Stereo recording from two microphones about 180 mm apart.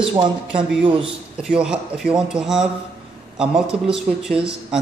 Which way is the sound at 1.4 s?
5° right (ahead or behind).